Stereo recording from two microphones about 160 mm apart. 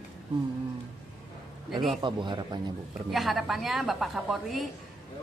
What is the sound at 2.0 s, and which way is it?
Speech, 30° right (ahead or behind).